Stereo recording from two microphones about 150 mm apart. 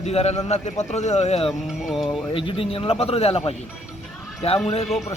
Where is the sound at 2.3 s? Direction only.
35° left (ahead or behind).